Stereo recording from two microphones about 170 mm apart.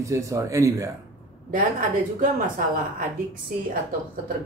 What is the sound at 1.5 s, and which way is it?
Speech, 55° right (ahead or behind).